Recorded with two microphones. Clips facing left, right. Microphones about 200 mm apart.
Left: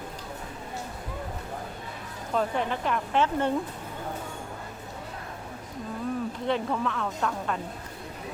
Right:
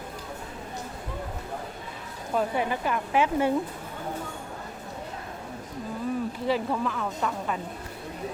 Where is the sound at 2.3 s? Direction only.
10° right (ahead or behind).